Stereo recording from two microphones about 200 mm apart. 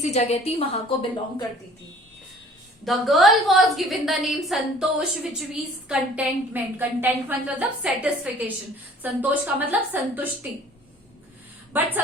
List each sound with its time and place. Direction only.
0.0 s a woman's voice: 35° left (ahead or behind)
2.8 s a woman's voice: centre (ahead or behind)
11.7 s a woman's voice: 10° right (ahead or behind)